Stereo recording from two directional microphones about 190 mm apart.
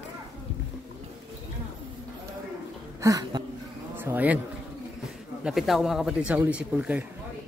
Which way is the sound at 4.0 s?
10° right (ahead or behind).